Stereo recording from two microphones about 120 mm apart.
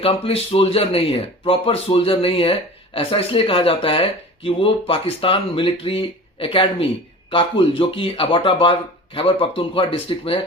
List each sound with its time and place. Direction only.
0.0 s speech: 55° left (ahead or behind)